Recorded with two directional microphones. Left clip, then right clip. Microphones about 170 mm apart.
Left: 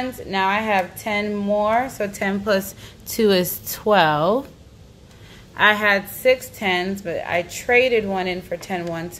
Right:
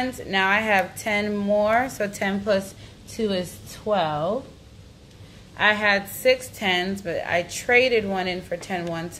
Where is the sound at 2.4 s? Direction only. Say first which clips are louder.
Left 2 dB; 25° left (ahead or behind).